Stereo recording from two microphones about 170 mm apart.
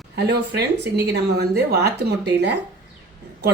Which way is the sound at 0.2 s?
80° right.